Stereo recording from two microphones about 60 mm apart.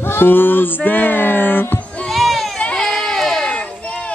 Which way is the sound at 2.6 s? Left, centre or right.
Centre.